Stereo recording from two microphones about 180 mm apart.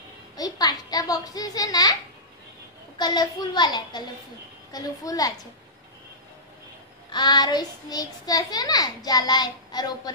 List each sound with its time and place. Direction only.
0.4 s a sound: 20° left (ahead or behind)
3.0 s a child's voice: 25° left (ahead or behind)
7.1 s a child's voice: 25° left (ahead or behind)